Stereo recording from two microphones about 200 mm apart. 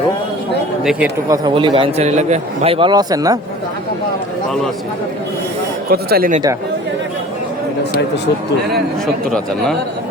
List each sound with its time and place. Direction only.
1.3 s a man's voice: 20° right (ahead or behind)
5.9 s speech: 50° right (ahead or behind)